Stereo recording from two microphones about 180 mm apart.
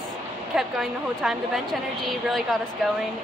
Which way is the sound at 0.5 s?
Centre (ahead or behind).